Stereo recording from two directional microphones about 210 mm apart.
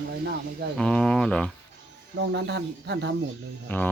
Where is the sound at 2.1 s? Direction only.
55° right (ahead or behind).